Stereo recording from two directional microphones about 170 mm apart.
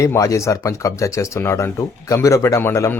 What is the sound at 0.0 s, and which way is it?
Speech, 20° left (ahead or behind).